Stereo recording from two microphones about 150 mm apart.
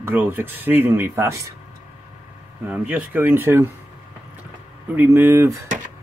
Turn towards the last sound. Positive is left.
turn(degrees=-15)  # may be behind; listen again after turning